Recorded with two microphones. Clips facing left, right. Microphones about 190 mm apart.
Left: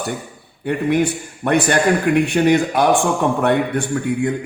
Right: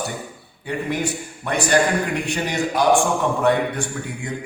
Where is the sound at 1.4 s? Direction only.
55° left (ahead or behind).